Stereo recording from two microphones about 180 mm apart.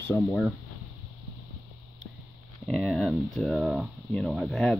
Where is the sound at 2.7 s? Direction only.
5° left (ahead or behind).